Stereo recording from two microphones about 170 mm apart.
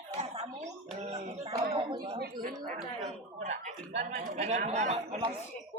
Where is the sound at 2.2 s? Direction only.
55° right (ahead or behind).